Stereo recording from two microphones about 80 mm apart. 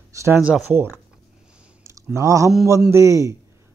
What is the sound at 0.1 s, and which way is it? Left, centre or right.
Speech, right.